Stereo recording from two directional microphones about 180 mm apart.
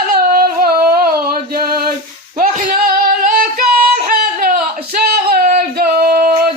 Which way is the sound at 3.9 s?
55° right (ahead or behind).